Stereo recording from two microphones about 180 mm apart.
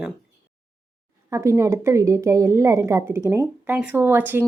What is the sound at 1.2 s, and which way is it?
A woman's voice, 15° right (ahead or behind).